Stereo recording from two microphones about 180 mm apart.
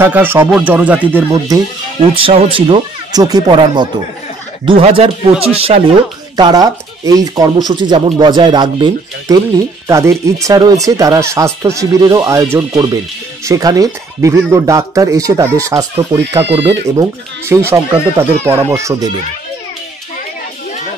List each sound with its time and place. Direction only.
0.0 s speech: 10° right (ahead or behind)
2.1 s speech: 30° right (ahead or behind)